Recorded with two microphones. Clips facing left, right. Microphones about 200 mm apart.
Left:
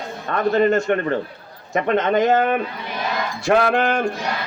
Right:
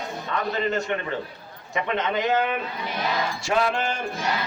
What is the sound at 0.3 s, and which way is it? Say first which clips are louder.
A man's voice: left 9 dB; 50° left (ahead or behind).